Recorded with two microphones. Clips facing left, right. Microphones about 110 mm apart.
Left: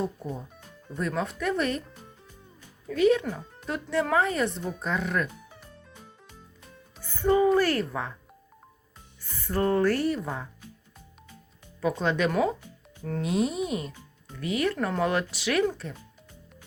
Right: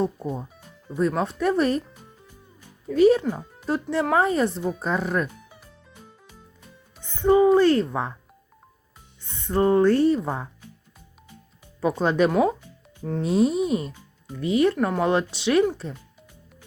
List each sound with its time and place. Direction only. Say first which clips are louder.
0.9 s speech: right 6 dB; 30° right (ahead or behind)
2.9 s speech: right 5 dB; 35° right (ahead or behind)
5.5 s music: left 1 dB; 10° right (ahead or behind)
7.0 s a woman's voice: right 5 dB; 20° right (ahead or behind)
9.2 s speech: right 5 dB; 25° right (ahead or behind)
11.8 s speech: right 5 dB; 35° right (ahead or behind)
13.0 s speech: right 4 dB; 20° right (ahead or behind)
13.2 s speech: right 6 dB; 30° right (ahead or behind)
13.9 s speech: right 7 dB; 20° right (ahead or behind)